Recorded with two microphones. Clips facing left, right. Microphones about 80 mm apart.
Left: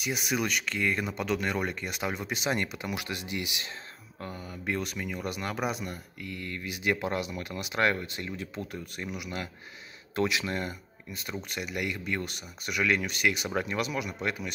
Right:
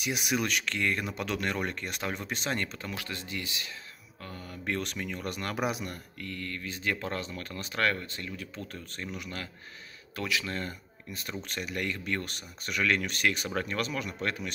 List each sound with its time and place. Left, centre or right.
0.0 s speech: centre
6.1 s speech: centre
10.1 s speech: left
11.1 s speech: centre